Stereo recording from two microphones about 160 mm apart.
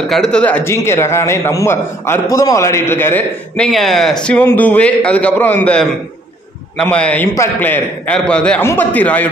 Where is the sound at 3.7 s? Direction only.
Centre (ahead or behind).